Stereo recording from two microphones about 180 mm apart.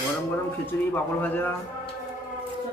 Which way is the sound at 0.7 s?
15° left (ahead or behind).